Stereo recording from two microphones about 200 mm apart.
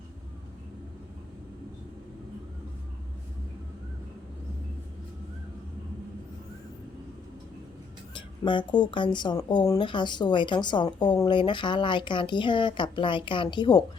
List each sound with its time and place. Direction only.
8.1 s speech: 25° left (ahead or behind)